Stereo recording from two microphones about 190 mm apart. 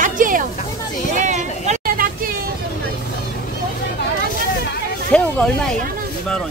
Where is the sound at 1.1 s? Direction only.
40° right (ahead or behind).